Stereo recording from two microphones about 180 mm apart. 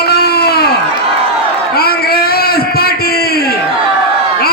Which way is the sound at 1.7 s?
60° left (ahead or behind).